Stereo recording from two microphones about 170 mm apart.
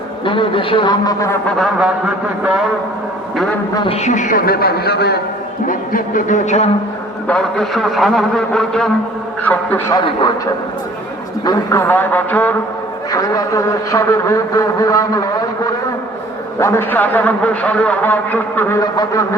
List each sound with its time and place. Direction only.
0.3 s a man's voice: 30° left (ahead or behind)
1.5 s a man's voice: centre (ahead or behind)
3.8 s a man's voice: 35° left (ahead or behind); by 5.2 s 70° left (ahead or behind)
5.6 s speech: 55° left (ahead or behind)
7.3 s a man's voice: 5° left (ahead or behind)
9.9 s a man's voice: 25° left (ahead or behind)
11.4 s a man's voice: 15° left (ahead or behind)